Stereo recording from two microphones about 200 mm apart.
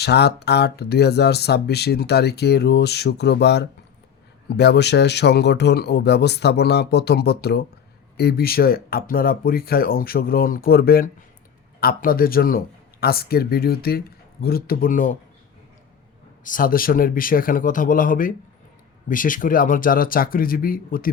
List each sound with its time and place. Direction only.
0.0 s speech: 55° left (ahead or behind)
16.4 s speech: 45° left (ahead or behind)